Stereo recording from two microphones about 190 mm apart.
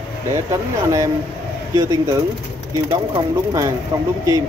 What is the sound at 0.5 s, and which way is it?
A man's voice, 15° right (ahead or behind).